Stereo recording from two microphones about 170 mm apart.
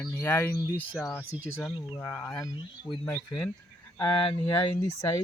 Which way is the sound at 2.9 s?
30° left (ahead or behind).